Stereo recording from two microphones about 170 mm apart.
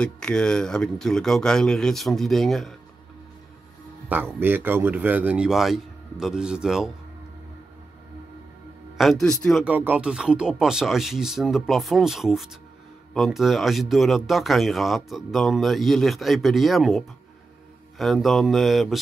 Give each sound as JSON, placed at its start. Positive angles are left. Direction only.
{"t": 0.0, "sound": "speech", "side_deg": 5}
{"t": 4.1, "sound": "a man's voice", "side_deg": -10}
{"t": 9.0, "sound": "speech", "side_deg": 0}